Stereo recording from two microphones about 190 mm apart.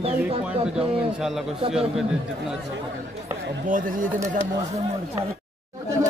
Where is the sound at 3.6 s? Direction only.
45° right (ahead or behind).